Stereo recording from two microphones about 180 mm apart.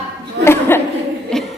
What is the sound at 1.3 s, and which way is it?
Music, centre (ahead or behind).